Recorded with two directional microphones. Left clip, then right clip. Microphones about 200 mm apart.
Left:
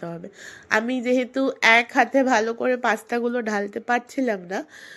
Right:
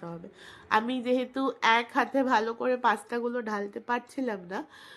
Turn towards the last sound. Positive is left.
turn(degrees=15)  # may be behind; listen again after turning